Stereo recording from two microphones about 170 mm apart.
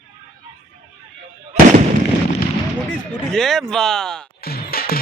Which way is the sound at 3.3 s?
5° left (ahead or behind).